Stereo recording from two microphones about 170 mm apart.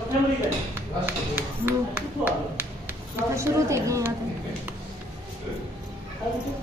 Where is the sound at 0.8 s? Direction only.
10° right (ahead or behind).